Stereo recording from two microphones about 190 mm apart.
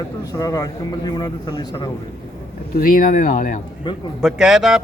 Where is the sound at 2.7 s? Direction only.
50° left (ahead or behind).